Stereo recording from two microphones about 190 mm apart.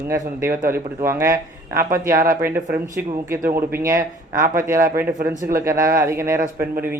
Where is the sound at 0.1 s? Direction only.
15° right (ahead or behind).